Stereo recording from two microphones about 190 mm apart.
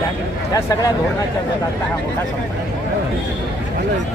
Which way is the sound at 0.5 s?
20° left (ahead or behind).